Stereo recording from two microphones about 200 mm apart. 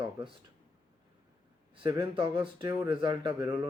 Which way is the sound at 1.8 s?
25° right (ahead or behind).